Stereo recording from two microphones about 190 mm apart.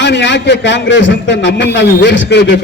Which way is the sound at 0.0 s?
70° left (ahead or behind).